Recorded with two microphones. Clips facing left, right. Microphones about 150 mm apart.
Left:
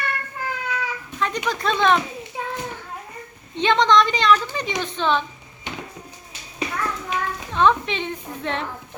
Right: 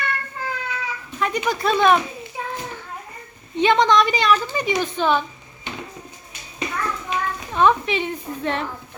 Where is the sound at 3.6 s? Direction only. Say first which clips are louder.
Right 1 dB; 10° right (ahead or behind).